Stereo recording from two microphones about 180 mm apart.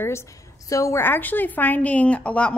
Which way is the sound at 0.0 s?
15° left (ahead or behind).